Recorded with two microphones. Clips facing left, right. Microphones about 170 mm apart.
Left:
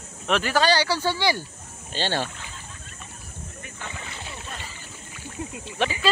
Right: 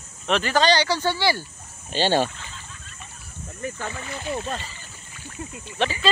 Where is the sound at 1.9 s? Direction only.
15° right (ahead or behind).